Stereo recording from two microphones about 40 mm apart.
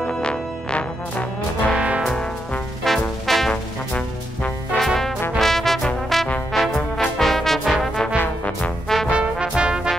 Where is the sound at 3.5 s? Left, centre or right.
Left.